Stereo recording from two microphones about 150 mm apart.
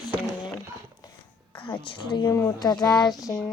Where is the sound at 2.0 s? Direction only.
30° left (ahead or behind).